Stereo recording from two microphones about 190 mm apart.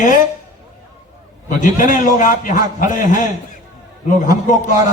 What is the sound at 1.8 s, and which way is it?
A man's voice, 40° left (ahead or behind).